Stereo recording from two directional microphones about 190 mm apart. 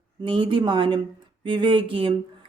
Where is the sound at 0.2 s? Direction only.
25° right (ahead or behind).